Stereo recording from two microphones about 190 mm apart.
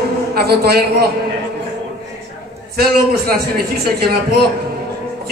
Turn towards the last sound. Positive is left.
turn(degrees=-55)  # may be behind; listen again after turning